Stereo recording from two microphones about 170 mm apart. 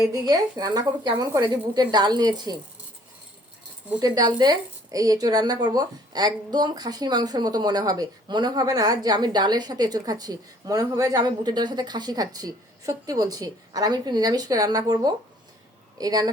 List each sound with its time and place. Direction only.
0.1 s a woman's voice: 25° right (ahead or behind)
4.0 s a woman's voice: 20° right (ahead or behind)